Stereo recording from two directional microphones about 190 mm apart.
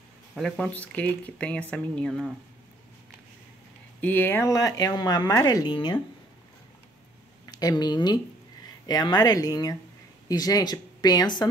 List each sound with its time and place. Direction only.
0.4 s speech: 5° left (ahead or behind)
4.0 s speech: 10° left (ahead or behind)
7.4 s speech: 20° left (ahead or behind)